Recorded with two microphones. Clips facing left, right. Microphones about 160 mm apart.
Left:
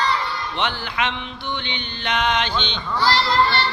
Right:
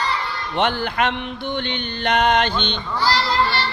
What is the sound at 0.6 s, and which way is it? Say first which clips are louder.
Mantra: right 6 dB; 50° right (ahead or behind).